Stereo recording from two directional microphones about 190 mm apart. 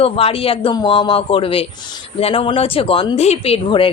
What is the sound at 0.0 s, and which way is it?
Speech, 30° left (ahead or behind).